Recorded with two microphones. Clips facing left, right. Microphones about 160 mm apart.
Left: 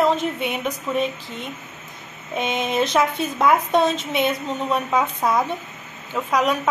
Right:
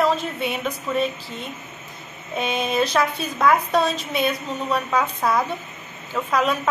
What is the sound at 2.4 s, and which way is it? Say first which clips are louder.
A woman's voice: even; 20° left (ahead or behind).